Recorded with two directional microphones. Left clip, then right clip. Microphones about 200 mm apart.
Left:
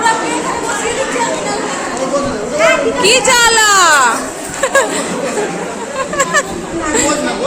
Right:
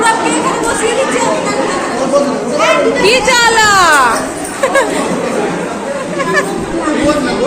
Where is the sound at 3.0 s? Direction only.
20° left (ahead or behind).